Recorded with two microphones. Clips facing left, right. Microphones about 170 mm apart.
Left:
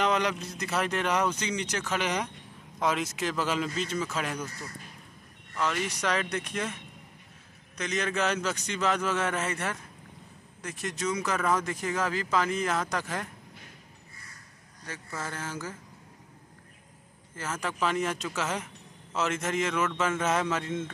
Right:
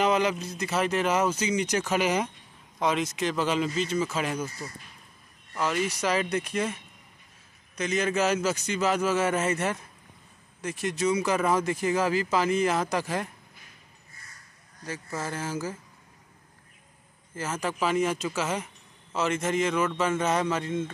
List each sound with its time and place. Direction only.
0.0 s speech: 5° right (ahead or behind)
9.4 s speech: 20° right (ahead or behind)
10.6 s speech: 5° right (ahead or behind)
15.3 s speech: 5° right (ahead or behind)
17.6 s speech: 5° right (ahead or behind)